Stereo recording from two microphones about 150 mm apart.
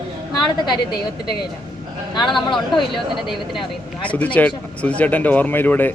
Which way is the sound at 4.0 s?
10° left (ahead or behind).